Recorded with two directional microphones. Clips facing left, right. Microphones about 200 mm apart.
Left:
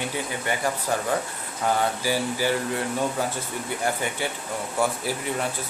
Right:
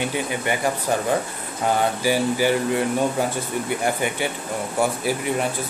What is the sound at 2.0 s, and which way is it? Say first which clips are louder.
Speech: right 8 dB; 15° right (ahead or behind).